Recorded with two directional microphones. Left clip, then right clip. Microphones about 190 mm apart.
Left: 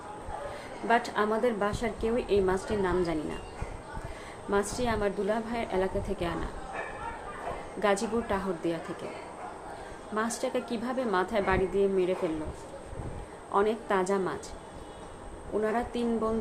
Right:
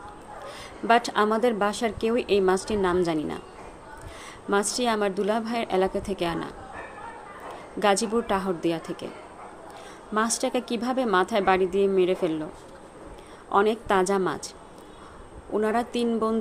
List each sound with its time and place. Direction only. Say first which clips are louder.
0.9 s a woman's voice: right 5 dB; 60° right (ahead or behind)
4.5 s a woman's voice: right 5 dB; 60° right (ahead or behind)
7.8 s a woman's voice: right 5 dB; 60° right (ahead or behind)
10.2 s a woman's voice: right 5 dB; 60° right (ahead or behind)
13.5 s a woman's voice: right 5 dB; 60° right (ahead or behind)
15.6 s a woman's voice: right 5 dB; 60° right (ahead or behind)